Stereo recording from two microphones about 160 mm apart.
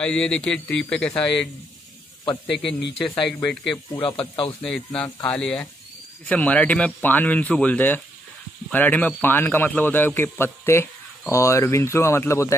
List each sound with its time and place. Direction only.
0.0 s a man's voice: 5° left (ahead or behind)
2.5 s speech: 90° left
3.4 s a man's voice: 5° left (ahead or behind)
4.0 s speech: 35° left (ahead or behind)
4.6 s a man's voice: 5° left (ahead or behind)